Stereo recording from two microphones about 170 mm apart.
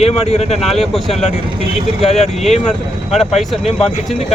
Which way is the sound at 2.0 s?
40° left (ahead or behind).